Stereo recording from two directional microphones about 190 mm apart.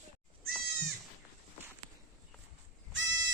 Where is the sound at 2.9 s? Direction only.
80° right.